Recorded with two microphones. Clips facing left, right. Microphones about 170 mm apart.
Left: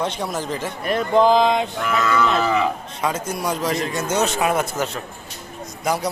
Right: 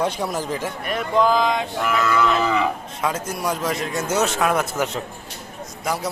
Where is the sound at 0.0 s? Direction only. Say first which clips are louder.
Right 1 dB; 10° right (ahead or behind).